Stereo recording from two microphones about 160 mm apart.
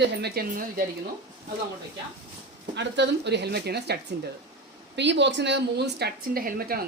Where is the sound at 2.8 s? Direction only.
90° right.